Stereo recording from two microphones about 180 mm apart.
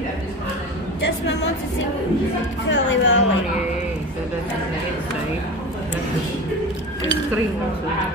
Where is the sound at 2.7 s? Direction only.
85° left.